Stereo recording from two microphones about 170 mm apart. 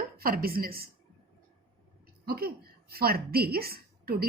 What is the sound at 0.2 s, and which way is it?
Speech, 60° right (ahead or behind).